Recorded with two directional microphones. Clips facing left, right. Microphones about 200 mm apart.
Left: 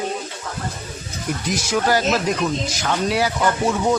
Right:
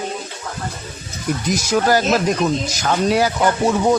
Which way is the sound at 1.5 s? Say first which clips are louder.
Right 3 dB; 40° right (ahead or behind).